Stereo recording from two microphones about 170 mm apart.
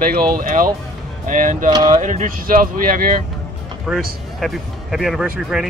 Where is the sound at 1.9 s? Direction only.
45° right (ahead or behind).